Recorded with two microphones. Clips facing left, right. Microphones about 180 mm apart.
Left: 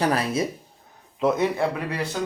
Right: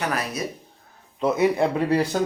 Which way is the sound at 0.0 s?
30° left (ahead or behind).